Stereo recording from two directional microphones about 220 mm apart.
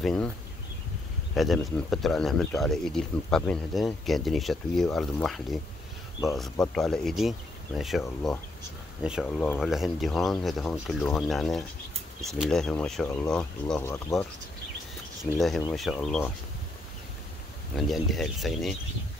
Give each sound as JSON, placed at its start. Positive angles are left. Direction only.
{"t": 0.0, "sound": "a man's voice", "side_deg": 5}
{"t": 1.3, "sound": "a man's voice", "side_deg": 0}
{"t": 15.7, "sound": "a man's voice", "side_deg": 0}
{"t": 17.7, "sound": "a man's voice", "side_deg": 0}